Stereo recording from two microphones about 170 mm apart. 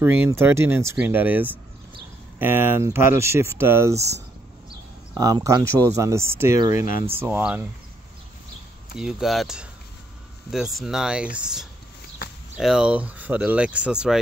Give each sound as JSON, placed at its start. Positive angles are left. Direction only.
{"t": 0.0, "sound": "speech", "side_deg": -15}
{"t": 5.1, "sound": "speech", "side_deg": -20}
{"t": 8.9, "sound": "speech", "side_deg": -5}